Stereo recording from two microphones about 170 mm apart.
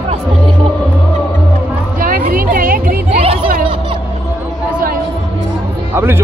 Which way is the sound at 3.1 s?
35° right (ahead or behind).